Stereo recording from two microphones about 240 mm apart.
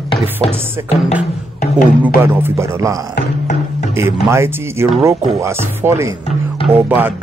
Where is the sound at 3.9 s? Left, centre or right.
Centre.